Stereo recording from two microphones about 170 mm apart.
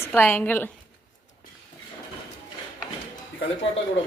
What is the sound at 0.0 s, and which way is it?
Speech, 10° left (ahead or behind).